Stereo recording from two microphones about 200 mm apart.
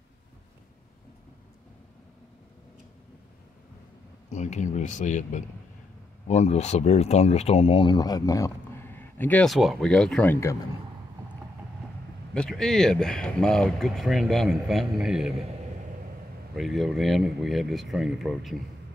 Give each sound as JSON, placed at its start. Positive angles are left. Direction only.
{"t": 4.3, "sound": "speech", "side_deg": 35}
{"t": 12.4, "sound": "speech", "side_deg": 0}
{"t": 16.5, "sound": "speech", "side_deg": 0}